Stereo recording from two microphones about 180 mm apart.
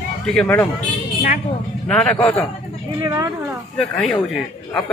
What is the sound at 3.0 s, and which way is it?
Speech, 20° right (ahead or behind).